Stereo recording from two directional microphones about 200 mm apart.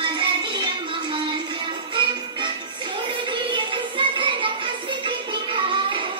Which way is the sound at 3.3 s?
25° right (ahead or behind).